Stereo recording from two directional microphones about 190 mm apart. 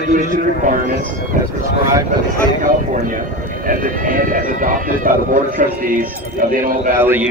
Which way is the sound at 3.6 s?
45° right (ahead or behind).